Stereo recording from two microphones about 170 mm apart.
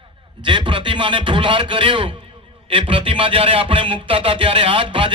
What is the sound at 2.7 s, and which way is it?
Music, 30° right (ahead or behind).